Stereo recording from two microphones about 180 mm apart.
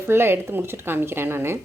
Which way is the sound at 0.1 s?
15° right (ahead or behind).